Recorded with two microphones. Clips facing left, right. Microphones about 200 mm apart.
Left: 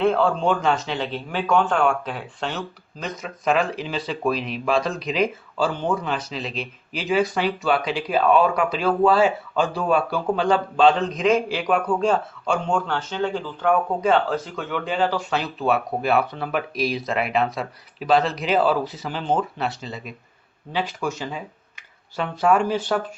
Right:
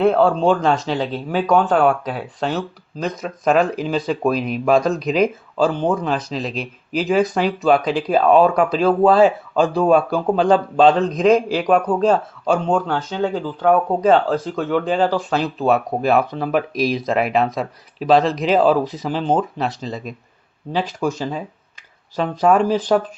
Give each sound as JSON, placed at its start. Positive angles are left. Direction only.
{"t": 0.0, "sound": "a man's voice", "side_deg": -40}